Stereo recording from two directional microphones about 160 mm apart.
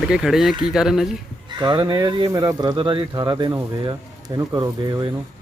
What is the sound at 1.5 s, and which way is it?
Speech, 30° right (ahead or behind).